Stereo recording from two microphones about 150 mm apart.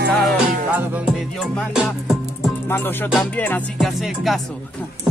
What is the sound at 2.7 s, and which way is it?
Music, 15° left (ahead or behind).